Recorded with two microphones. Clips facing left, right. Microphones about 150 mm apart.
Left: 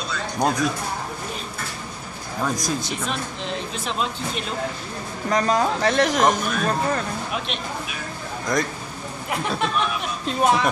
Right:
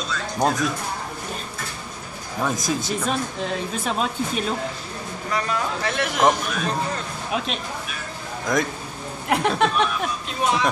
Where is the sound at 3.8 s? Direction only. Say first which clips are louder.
Right 2 dB; 50° right (ahead or behind).